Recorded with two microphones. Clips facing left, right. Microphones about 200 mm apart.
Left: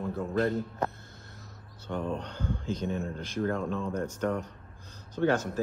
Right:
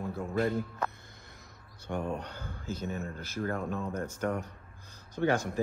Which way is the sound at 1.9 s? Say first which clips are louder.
Left 1 dB; 10° right (ahead or behind).